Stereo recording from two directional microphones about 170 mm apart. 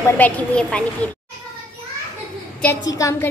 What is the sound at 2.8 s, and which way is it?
Speech, 20° left (ahead or behind).